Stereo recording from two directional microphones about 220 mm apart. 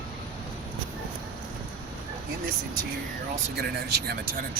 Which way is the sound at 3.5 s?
45° right (ahead or behind).